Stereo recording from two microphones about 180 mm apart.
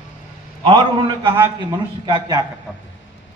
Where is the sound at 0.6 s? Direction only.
30° right (ahead or behind).